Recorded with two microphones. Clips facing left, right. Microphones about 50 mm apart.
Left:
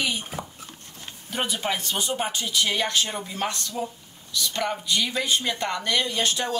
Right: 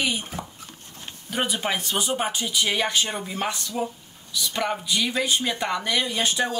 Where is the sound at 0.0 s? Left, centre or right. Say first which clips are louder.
Right 1 dB; centre.